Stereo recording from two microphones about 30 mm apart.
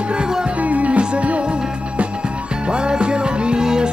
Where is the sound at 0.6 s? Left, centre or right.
Right.